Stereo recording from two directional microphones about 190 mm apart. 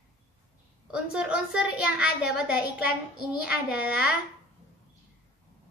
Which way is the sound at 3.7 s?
5° right (ahead or behind).